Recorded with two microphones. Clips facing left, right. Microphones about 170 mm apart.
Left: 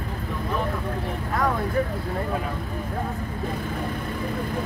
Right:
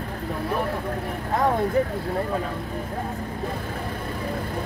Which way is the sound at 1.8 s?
20° right (ahead or behind).